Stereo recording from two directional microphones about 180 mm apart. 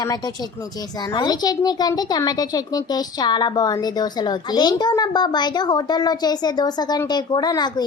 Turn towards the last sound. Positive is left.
turn(degrees=20)  # may be behind; listen again after turning